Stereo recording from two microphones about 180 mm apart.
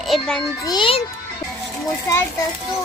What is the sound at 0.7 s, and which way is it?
Speech, 25° left (ahead or behind).